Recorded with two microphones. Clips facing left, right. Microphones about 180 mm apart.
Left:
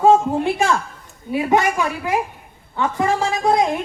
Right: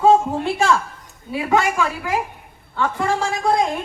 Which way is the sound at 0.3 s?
15° left (ahead or behind).